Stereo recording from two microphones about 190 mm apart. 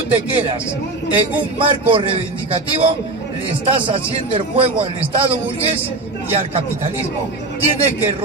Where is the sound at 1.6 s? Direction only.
25° right (ahead or behind).